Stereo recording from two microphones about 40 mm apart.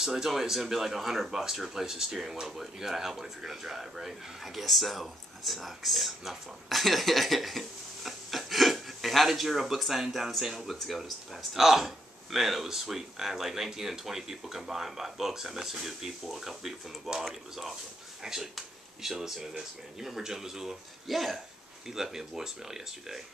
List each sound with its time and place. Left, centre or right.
0.0 s speech: centre